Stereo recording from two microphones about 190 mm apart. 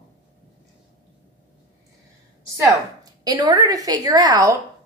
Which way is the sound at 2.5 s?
20° right (ahead or behind).